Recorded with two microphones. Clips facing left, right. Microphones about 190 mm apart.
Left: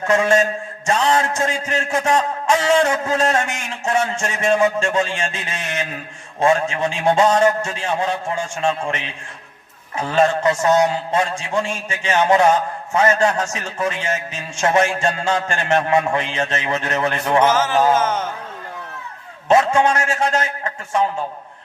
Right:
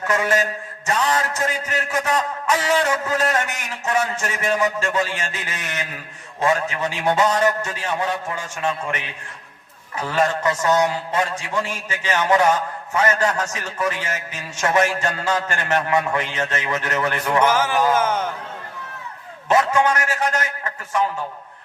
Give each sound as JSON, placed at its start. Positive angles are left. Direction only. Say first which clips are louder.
{"t": 0.0, "sound": "a man's voice", "louder": "left 4 dB", "side_deg": 30}
{"t": 17.4, "sound": "speech", "louder": "left 2 dB", "side_deg": -10}
{"t": 19.5, "sound": "a man's voice", "louder": "left 3 dB", "side_deg": 25}